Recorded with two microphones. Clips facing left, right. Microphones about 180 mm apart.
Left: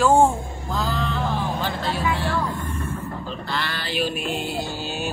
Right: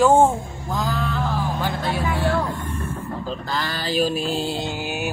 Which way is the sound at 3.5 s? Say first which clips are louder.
Right 2 dB; 40° right (ahead or behind).